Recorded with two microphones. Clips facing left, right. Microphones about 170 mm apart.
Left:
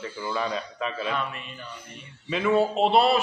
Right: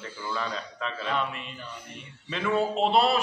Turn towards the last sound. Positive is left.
turn(degrees=0)  # may be behind; listen again after turning